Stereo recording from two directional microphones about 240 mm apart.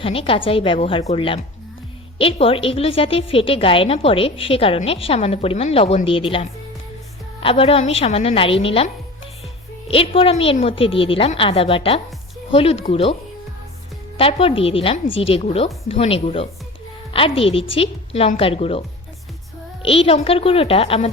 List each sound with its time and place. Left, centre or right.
0.0 s a woman's voice: left
9.9 s a woman's voice: left
14.2 s a woman's voice: left